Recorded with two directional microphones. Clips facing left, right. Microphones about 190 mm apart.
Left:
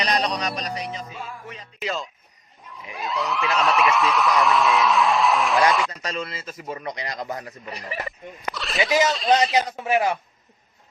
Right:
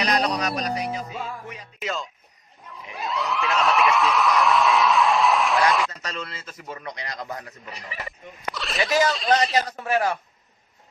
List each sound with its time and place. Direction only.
0.0 s speech: 5° right (ahead or behind)
2.7 s a sound: centre (ahead or behind)
5.9 s a man's voice: 10° left (ahead or behind)
8.5 s speech: centre (ahead or behind)
9.6 s a man's voice: 20° left (ahead or behind)